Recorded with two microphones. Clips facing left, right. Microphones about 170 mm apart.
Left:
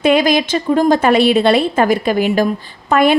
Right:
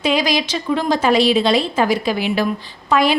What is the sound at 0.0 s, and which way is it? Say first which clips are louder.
A woman's voice: left 6 dB; 55° left (ahead or behind).